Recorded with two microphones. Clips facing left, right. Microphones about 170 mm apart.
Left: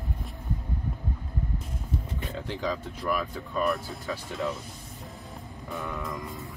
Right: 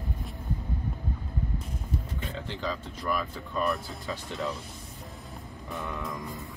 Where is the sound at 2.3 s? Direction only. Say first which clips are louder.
Left 3 dB; 10° left (ahead or behind).